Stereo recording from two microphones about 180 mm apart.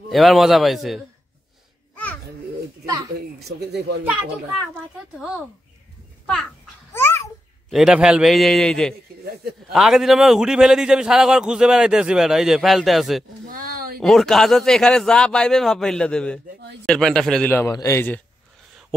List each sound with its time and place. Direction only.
0.1 s a man's voice: centre (ahead or behind)
2.8 s speech: 20° right (ahead or behind)
3.2 s speech: 65° right (ahead or behind)
4.0 s a man's voice: 5° right (ahead or behind)
6.9 s babbling: 15° left (ahead or behind)
7.7 s a man's voice: 5° right (ahead or behind)
13.5 s a sound: 55° right (ahead or behind)
13.9 s a man's voice: centre (ahead or behind)